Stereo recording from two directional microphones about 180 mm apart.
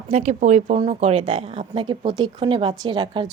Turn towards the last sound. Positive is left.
turn(degrees=-25)  # may be behind; listen again after turning